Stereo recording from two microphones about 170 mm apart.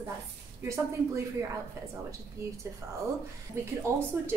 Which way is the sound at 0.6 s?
15° right (ahead or behind).